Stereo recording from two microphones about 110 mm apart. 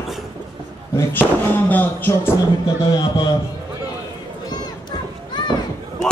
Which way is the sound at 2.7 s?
40° left (ahead or behind).